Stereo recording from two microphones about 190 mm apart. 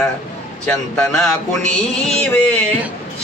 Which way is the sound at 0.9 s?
5° left (ahead or behind).